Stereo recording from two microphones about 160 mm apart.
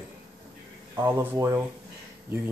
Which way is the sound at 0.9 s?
15° right (ahead or behind).